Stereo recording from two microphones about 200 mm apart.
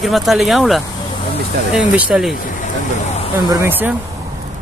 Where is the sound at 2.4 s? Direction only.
40° left (ahead or behind).